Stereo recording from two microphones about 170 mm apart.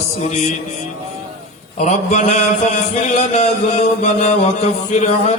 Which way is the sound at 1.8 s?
40° left (ahead or behind).